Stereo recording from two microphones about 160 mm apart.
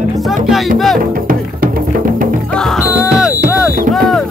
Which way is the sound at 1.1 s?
60° right (ahead or behind).